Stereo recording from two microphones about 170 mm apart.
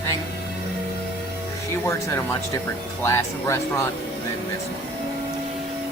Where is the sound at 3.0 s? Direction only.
15° left (ahead or behind).